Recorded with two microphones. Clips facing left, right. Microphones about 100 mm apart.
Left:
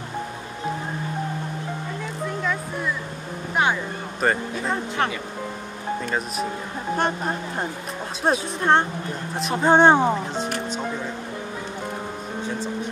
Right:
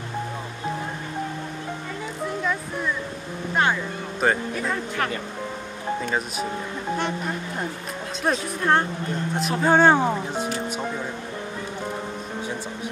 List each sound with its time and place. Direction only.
4.2 s speech: centre (ahead or behind)
4.6 s speech: 30° left (ahead or behind)
6.0 s speech: centre (ahead or behind)
7.0 s speech: 45° left (ahead or behind)
8.3 s speech: 25° left (ahead or behind)
9.3 s speech: centre (ahead or behind)
9.6 s speech: 20° left (ahead or behind)